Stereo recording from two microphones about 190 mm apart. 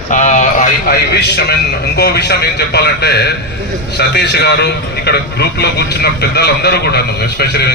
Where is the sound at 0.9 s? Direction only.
60° left (ahead or behind).